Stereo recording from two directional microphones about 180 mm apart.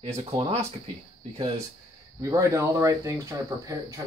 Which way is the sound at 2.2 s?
20° right (ahead or behind).